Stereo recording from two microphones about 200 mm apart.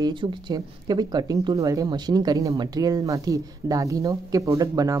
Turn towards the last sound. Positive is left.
turn(degrees=-20)  # may be behind; listen again after turning